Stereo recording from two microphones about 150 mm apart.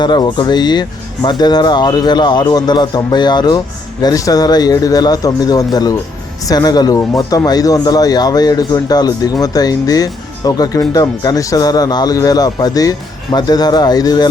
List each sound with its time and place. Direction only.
0.0 s speech: 30° left (ahead or behind)